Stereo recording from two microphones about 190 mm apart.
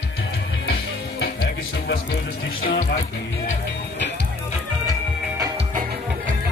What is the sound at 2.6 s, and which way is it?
Music, 50° left (ahead or behind).